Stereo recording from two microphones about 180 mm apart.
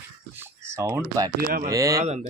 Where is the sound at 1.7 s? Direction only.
15° right (ahead or behind).